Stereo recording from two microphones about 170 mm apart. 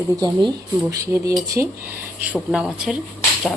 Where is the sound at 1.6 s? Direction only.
10° right (ahead or behind).